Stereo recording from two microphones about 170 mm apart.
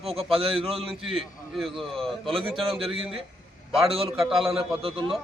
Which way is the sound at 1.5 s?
Centre (ahead or behind).